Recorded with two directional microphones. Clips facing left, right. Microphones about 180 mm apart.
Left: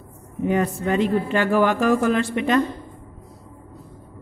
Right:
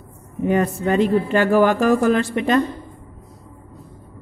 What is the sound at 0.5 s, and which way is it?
Speech, 40° right (ahead or behind).